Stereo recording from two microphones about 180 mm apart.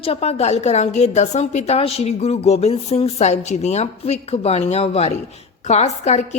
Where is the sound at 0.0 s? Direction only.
35° left (ahead or behind).